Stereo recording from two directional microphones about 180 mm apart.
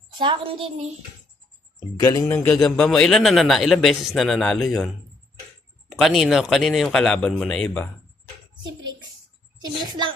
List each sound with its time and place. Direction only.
0.2 s a woman's voice: 30° right (ahead or behind)
2.0 s speech: 20° left (ahead or behind)
2.5 s a man's voice: 5° left (ahead or behind)
8.6 s a sound: 25° right (ahead or behind)